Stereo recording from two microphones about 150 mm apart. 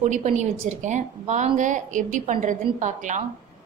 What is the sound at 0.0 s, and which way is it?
A woman's voice, 55° right (ahead or behind).